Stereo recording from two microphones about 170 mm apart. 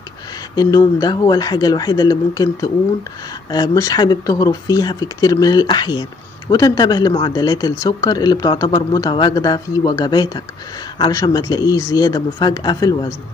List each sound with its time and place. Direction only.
0.6 s speech: 20° left (ahead or behind)